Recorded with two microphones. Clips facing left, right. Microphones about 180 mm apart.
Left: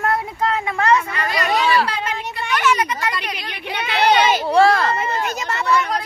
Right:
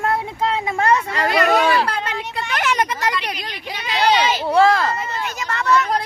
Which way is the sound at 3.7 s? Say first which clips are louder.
Left 1 dB; 55° left (ahead or behind).